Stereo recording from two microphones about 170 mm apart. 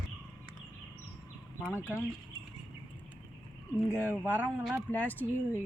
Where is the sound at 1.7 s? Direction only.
10° right (ahead or behind).